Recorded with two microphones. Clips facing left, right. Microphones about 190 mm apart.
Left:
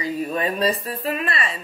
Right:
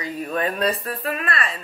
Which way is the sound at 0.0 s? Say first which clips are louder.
Left 1 dB; centre (ahead or behind).